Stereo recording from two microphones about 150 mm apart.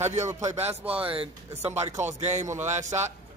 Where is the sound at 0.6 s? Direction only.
45° right (ahead or behind).